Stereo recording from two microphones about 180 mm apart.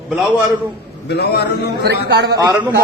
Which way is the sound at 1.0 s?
65° left (ahead or behind).